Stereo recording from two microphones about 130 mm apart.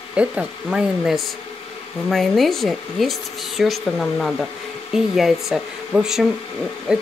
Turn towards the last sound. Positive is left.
turn(degrees=-5)  # may be behind; listen again after turning